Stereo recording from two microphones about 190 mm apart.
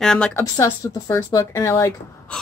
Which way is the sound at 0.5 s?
15° left (ahead or behind).